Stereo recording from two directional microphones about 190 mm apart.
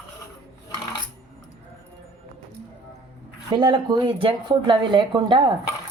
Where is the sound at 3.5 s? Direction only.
20° right (ahead or behind).